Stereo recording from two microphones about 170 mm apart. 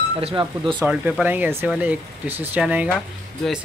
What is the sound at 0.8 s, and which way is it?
Speech, 10° right (ahead or behind).